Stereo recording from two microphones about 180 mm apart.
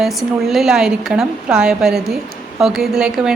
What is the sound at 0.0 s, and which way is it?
A woman's voice, centre (ahead or behind).